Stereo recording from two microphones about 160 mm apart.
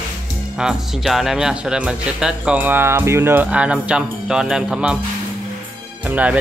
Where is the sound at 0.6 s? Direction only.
5° right (ahead or behind).